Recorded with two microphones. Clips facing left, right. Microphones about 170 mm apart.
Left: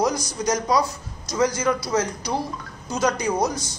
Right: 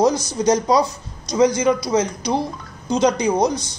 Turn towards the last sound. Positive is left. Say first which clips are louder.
# right 5 dB
turn(degrees=-20)  # may be behind; listen again after turning